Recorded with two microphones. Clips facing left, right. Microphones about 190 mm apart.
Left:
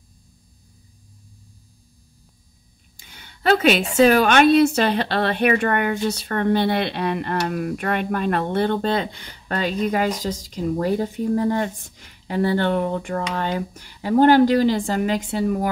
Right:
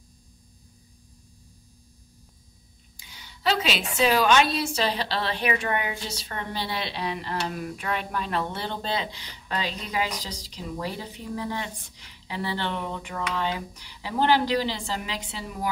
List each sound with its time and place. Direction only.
3.0 s a woman's voice: 55° left (ahead or behind)